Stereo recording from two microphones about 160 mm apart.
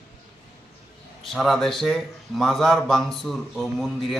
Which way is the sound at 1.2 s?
Centre (ahead or behind).